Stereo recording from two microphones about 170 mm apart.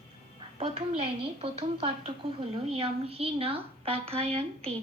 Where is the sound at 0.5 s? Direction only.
35° right (ahead or behind).